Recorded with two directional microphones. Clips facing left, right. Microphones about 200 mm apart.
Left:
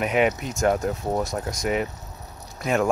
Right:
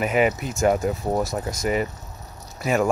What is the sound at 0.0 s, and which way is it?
Speech, centre (ahead or behind).